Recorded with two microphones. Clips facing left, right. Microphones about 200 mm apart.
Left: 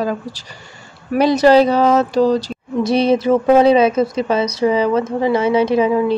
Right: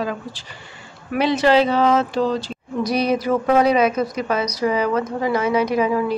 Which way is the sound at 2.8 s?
25° left (ahead or behind).